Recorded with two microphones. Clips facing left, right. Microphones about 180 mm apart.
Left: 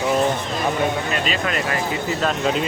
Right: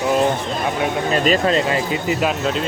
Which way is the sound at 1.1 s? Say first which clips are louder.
Right 7 dB; 40° right (ahead or behind).